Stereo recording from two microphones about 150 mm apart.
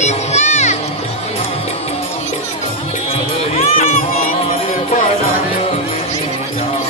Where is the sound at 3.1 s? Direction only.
45° left (ahead or behind).